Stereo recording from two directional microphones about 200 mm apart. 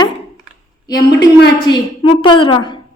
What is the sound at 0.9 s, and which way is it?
Speech, 55° left (ahead or behind).